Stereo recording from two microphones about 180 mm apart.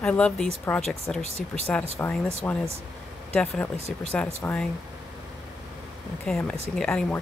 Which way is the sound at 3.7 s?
35° right (ahead or behind).